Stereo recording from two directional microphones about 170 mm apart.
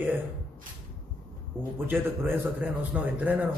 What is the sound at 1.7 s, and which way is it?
A man's voice, 10° right (ahead or behind).